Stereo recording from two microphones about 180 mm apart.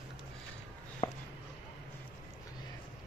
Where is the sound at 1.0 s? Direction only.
40° left (ahead or behind).